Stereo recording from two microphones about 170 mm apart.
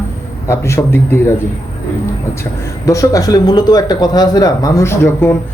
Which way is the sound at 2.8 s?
20° left (ahead or behind).